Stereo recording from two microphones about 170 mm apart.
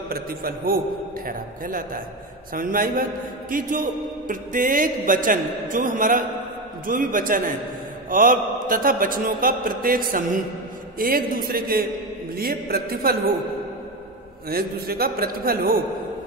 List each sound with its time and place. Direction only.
0.1 s mantra: 60° right (ahead or behind)
2.5 s a man's voice: 55° right (ahead or behind)
8.1 s mantra: 55° right (ahead or behind)
14.5 s mantra: 60° right (ahead or behind)